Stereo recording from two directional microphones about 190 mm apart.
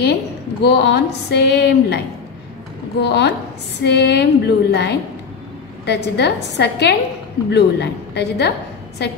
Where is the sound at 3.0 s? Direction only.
60° left (ahead or behind).